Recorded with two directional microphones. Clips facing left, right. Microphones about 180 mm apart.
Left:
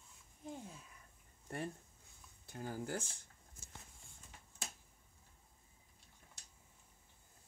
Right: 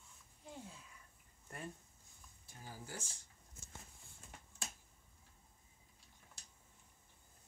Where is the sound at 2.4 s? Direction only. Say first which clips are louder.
Left 10 dB; 60° left (ahead or behind).